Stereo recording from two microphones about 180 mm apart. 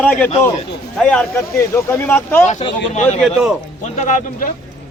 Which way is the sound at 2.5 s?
40° left (ahead or behind).